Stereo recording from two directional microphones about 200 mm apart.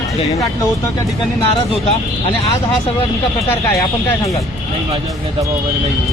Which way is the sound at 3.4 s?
15° left (ahead or behind).